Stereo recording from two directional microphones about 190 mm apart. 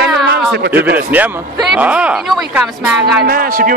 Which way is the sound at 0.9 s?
10° right (ahead or behind).